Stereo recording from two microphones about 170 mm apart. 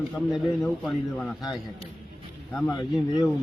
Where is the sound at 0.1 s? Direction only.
Centre (ahead or behind).